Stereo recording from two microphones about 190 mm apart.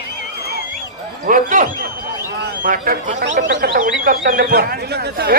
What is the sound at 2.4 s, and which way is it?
A man's voice, 50° right (ahead or behind).